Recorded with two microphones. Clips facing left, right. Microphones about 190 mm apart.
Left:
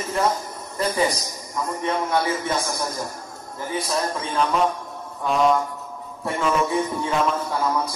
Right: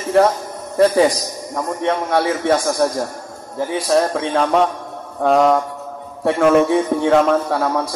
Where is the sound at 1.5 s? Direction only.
80° right.